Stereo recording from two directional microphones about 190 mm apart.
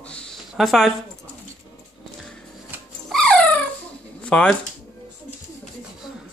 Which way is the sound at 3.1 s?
5° left (ahead or behind).